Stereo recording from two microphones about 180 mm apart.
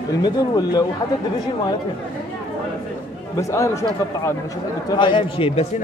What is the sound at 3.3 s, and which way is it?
A man's voice, 15° left (ahead or behind).